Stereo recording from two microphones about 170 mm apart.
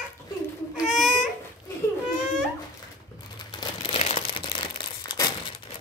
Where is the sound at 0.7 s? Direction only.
5° right (ahead or behind).